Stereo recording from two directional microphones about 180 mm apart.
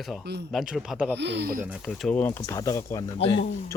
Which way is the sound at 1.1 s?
70° right (ahead or behind).